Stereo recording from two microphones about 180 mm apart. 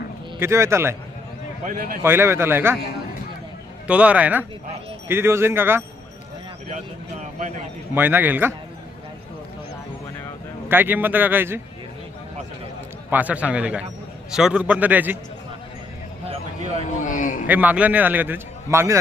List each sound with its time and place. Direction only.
0.3 s a man's voice: 15° right (ahead or behind)
1.6 s a man's voice: 55° right (ahead or behind)
2.0 s a man's voice: 15° right (ahead or behind)
3.8 s a man's voice: 5° right (ahead or behind)
6.7 s speech: 40° right (ahead or behind)
7.9 s a man's voice: 10° right (ahead or behind)
10.7 s a man's voice: 10° right (ahead or behind)
13.1 s a man's voice: 10° right (ahead or behind)
16.3 s a sound: 35° right (ahead or behind)
17.0 s a sound: 45° left (ahead or behind)
17.4 s a man's voice: 10° right (ahead or behind)